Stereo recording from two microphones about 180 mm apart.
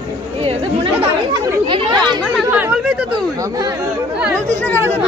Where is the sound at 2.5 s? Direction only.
10° right (ahead or behind).